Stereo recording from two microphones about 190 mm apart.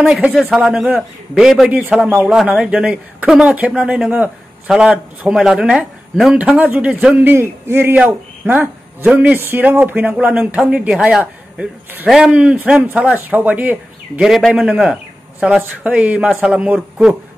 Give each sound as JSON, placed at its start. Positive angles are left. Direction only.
{"t": 0.0, "sound": "a man's voice", "side_deg": -5}